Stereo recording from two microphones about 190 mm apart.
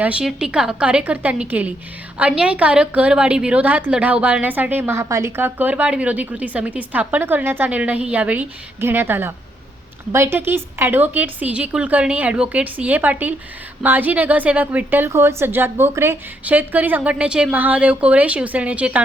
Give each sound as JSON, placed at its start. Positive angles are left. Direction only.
{"t": 0.0, "sound": "a woman's voice", "side_deg": -5}